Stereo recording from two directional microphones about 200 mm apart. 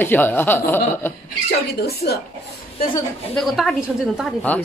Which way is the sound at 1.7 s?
55° left (ahead or behind).